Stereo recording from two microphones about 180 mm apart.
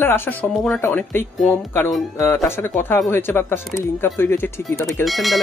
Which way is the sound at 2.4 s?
15° left (ahead or behind).